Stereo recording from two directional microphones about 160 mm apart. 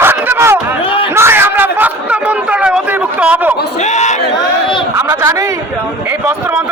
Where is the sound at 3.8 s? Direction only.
45° left (ahead or behind).